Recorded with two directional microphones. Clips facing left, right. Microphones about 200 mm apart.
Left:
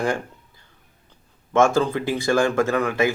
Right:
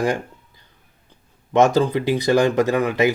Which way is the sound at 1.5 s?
20° right (ahead or behind).